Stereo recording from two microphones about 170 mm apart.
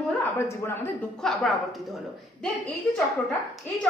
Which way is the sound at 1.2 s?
Centre (ahead or behind).